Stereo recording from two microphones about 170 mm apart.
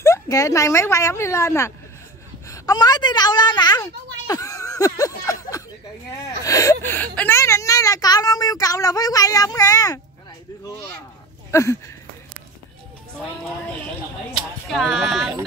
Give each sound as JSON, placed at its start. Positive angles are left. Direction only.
{"t": 0.0, "sound": "speech", "side_deg": 15}
{"t": 2.4, "sound": "a sound", "side_deg": 20}
{"t": 6.2, "sound": "speech", "side_deg": 20}
{"t": 13.7, "sound": "speech", "side_deg": 10}